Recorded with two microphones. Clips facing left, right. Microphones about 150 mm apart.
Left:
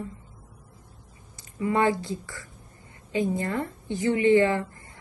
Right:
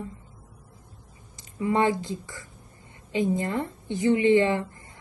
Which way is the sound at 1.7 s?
20° right (ahead or behind).